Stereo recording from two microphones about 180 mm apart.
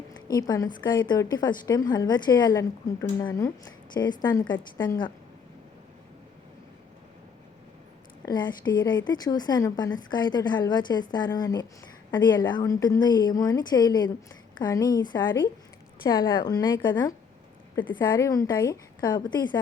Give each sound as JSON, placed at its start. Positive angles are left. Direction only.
{"t": 0.3, "sound": "a woman's voice", "side_deg": 20}
{"t": 8.2, "sound": "a woman's voice", "side_deg": 25}